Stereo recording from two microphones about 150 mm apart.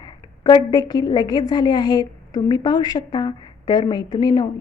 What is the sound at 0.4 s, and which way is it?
A woman's voice, 30° left (ahead or behind).